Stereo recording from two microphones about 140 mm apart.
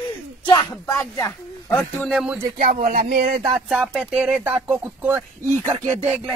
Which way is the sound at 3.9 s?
5° right (ahead or behind).